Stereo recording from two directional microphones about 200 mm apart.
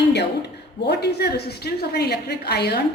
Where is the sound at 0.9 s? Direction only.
55° left (ahead or behind).